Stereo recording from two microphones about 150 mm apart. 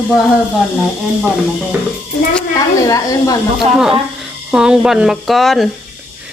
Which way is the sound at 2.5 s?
25° left (ahead or behind).